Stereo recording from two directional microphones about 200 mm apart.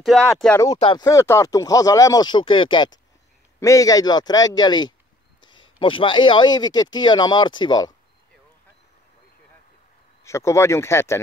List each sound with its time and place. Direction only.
0.0 s speech: centre (ahead or behind)
0.7 s speech: 25° left (ahead or behind)
1.0 s speech: 15° left (ahead or behind)
10.2 s speech: 15° left (ahead or behind)